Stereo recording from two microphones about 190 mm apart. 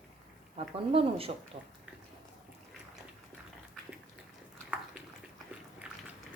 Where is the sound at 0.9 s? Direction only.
30° right (ahead or behind).